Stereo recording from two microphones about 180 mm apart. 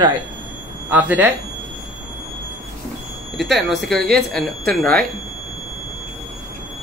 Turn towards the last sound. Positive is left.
turn(degrees=5)  # may be behind; listen again after turning